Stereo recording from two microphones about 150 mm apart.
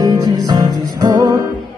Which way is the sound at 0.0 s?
25° right (ahead or behind).